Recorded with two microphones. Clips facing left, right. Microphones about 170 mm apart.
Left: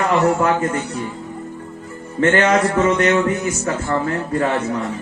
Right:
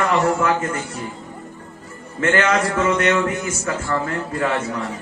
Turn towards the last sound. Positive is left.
turn(degrees=35)  # may be behind; listen again after turning